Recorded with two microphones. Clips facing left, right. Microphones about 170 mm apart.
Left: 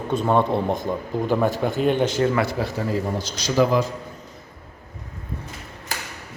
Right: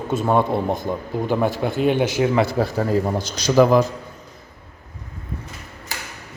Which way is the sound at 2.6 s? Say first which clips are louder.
Right 5 dB; 40° right (ahead or behind).